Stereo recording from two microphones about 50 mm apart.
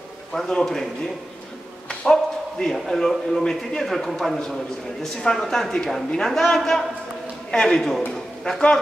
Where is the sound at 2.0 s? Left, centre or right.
Centre.